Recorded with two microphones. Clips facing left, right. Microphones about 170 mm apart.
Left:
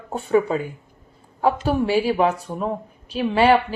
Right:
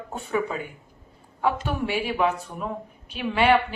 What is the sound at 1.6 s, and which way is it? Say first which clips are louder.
A woman's voice: left 7 dB; 35° left (ahead or behind).